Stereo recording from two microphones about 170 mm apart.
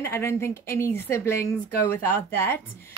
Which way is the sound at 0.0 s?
15° left (ahead or behind).